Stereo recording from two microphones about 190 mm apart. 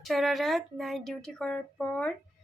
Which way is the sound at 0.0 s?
Centre (ahead or behind).